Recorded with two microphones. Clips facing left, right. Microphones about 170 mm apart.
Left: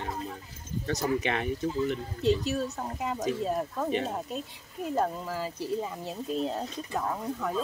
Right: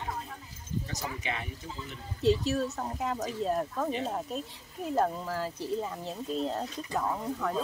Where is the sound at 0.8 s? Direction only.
70° left (ahead or behind).